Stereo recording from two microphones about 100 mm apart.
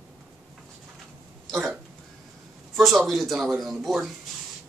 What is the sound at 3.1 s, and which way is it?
Speech, centre (ahead or behind).